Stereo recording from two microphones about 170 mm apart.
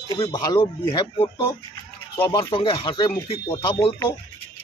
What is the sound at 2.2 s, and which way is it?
Speech, 30° left (ahead or behind).